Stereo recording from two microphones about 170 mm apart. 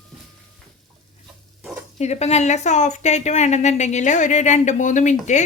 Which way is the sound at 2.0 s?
40° left (ahead or behind).